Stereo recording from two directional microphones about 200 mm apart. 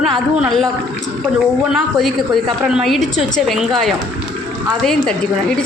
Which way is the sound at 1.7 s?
Centre (ahead or behind).